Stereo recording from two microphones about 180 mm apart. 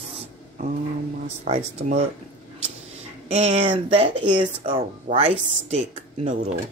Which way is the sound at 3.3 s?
35° right (ahead or behind).